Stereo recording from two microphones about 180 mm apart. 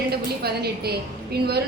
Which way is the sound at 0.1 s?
60° right (ahead or behind).